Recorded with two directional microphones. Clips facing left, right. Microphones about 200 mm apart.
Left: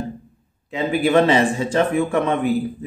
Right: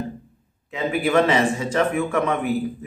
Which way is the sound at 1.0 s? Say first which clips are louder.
Left 3 dB; 30° left (ahead or behind).